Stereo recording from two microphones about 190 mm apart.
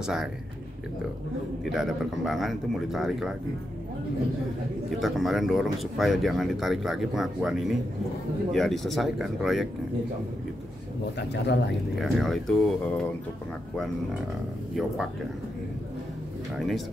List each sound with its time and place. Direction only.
0.0 s speech: 5° right (ahead or behind)
1.7 s speech: centre (ahead or behind)
5.0 s speech: centre (ahead or behind)
11.1 s speech: 65° left (ahead or behind)
11.9 s speech: centre (ahead or behind)
16.5 s speech: centre (ahead or behind)